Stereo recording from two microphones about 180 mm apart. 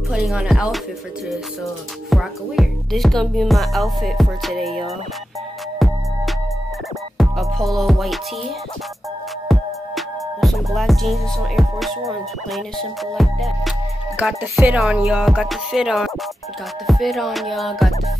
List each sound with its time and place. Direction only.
0.1 s speech: 5° right (ahead or behind)
2.0 s speech: centre (ahead or behind)
5.8 s music: centre (ahead or behind)
7.2 s music: centre (ahead or behind)
9.5 s music: centre (ahead or behind)
16.8 s speech: centre (ahead or behind)